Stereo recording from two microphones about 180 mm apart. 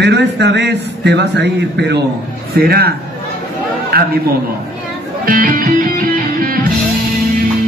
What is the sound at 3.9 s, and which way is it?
Speech, 60° right (ahead or behind).